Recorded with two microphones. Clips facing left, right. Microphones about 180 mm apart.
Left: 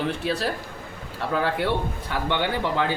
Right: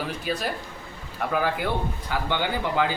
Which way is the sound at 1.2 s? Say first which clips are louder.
Left 1 dB; 30° left (ahead or behind).